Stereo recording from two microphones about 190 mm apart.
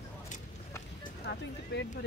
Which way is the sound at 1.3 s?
65° left (ahead or behind).